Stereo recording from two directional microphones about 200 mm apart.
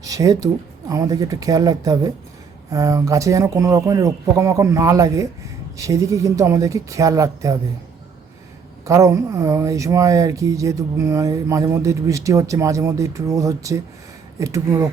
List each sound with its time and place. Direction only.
0.0 s speech: 15° right (ahead or behind)
8.8 s speech: 15° right (ahead or behind)